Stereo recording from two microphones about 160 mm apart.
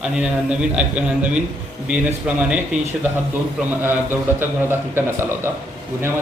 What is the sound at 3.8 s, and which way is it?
A man's voice, 15° right (ahead or behind).